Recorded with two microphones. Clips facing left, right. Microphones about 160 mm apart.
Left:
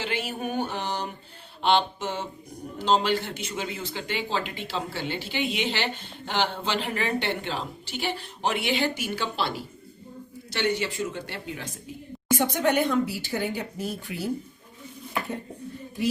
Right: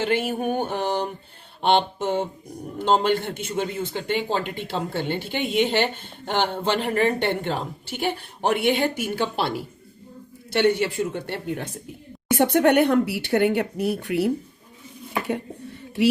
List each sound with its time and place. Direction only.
0.0 s music: 50° right (ahead or behind)
1.6 s a man's voice: 50° right (ahead or behind)
10.5 s speech: 55° right (ahead or behind)
16.0 s speech: 80° right